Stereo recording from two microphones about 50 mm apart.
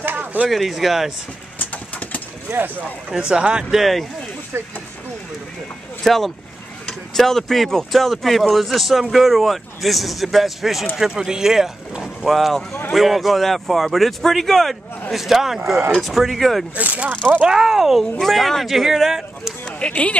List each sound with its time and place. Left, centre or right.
0.0 s a sound: right
0.5 s speech: centre
1.6 s vehicle: left
3.1 s speech: centre
3.7 s speech: centre
6.0 s speech: centre
16.7 s speech: right
17.4 s speech: centre
19.6 s speech: left